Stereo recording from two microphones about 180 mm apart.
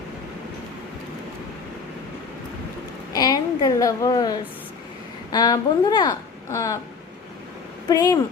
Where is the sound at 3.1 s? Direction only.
20° left (ahead or behind).